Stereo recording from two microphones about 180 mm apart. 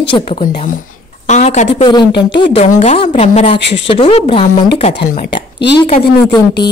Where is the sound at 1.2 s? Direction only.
40° left (ahead or behind).